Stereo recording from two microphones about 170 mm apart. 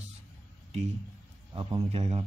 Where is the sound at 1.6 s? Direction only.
35° right (ahead or behind).